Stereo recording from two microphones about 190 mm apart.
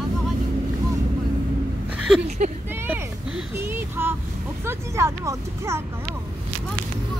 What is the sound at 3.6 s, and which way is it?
Child singing, 10° right (ahead or behind).